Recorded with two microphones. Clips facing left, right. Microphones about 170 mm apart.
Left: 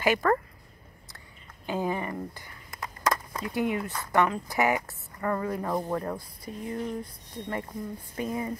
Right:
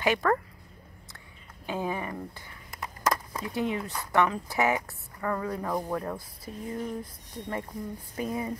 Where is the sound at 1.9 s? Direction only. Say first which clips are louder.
Left 2 dB; 5° right (ahead or behind).